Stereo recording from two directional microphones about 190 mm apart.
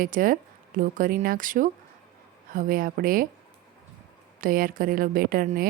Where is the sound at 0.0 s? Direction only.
45° right (ahead or behind).